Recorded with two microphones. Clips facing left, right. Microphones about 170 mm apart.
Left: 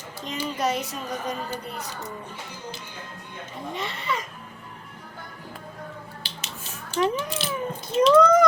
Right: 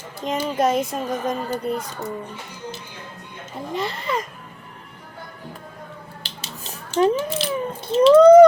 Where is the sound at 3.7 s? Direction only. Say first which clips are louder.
Right 5 dB; 40° right (ahead or behind).